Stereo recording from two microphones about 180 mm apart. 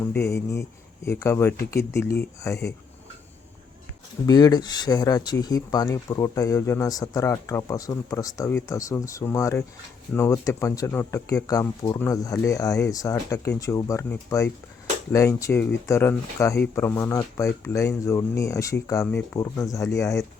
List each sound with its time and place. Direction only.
0.0 s speech: 15° left (ahead or behind)
4.3 s speech: 20° left (ahead or behind)